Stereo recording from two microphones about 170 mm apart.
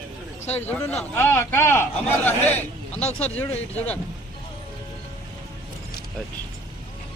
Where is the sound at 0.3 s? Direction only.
40° left (ahead or behind).